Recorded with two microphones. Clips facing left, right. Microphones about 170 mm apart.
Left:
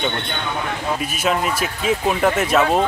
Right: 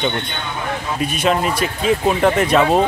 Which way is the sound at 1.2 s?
5° left (ahead or behind).